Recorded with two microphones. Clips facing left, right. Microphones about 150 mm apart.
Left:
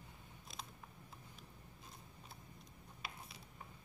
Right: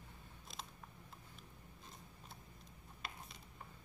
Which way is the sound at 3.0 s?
Centre (ahead or behind).